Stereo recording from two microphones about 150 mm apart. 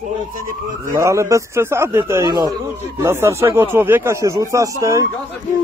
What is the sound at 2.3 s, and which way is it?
Speech, 30° right (ahead or behind).